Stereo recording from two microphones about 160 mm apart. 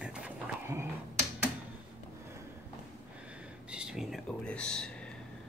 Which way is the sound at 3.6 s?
5° right (ahead or behind).